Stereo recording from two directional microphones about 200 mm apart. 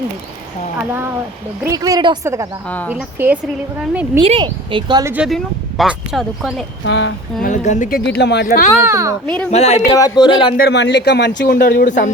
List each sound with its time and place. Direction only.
0.8 s a woman's voice: 10° right (ahead or behind)
2.6 s speech: 10° left (ahead or behind)
2.9 s a woman's voice: 10° right (ahead or behind)
4.2 s speech: 25° right (ahead or behind)
5.1 s speech: centre (ahead or behind)
6.8 s speech: 70° left (ahead or behind)
7.4 s a man's voice: 40° left (ahead or behind)
8.8 s a woman's voice: 15° right (ahead or behind)
9.2 s speech: 5° left (ahead or behind)
9.5 s speech: 35° left (ahead or behind)
9.9 s speech: 20° left (ahead or behind)
10.6 s a man's voice: 60° left (ahead or behind); by 12.1 s 40° left (ahead or behind)